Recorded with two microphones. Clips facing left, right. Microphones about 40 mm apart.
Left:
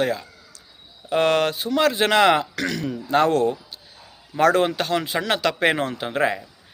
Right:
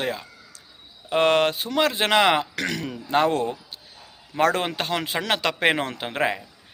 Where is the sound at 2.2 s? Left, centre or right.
Right.